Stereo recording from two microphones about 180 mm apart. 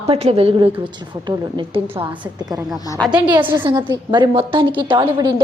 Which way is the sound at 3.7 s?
25° right (ahead or behind).